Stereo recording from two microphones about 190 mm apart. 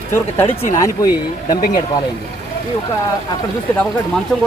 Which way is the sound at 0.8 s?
20° left (ahead or behind).